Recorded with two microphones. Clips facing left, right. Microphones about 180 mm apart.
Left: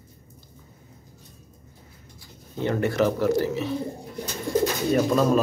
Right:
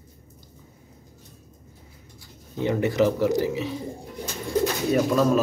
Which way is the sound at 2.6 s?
15° right (ahead or behind).